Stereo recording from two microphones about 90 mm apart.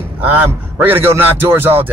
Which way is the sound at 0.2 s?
20° right (ahead or behind).